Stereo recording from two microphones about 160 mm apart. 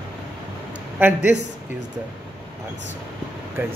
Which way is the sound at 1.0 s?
10° right (ahead or behind).